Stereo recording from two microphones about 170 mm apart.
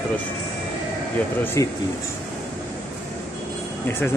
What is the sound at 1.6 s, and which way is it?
Speech, 20° left (ahead or behind).